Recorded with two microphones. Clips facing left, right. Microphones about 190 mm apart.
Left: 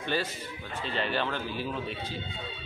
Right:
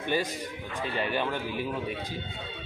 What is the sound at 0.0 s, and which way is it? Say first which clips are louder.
A man's voice: right 2 dB; 15° right (ahead or behind).